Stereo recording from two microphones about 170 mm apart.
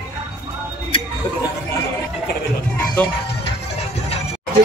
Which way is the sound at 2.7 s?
10° left (ahead or behind).